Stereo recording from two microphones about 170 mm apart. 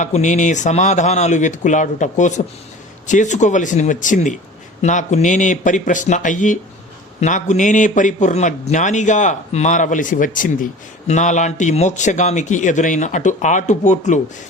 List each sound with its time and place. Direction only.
0.0 s a man's voice: 45° left (ahead or behind)